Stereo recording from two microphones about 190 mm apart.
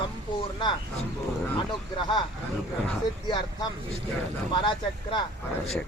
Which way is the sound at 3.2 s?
25° left (ahead or behind).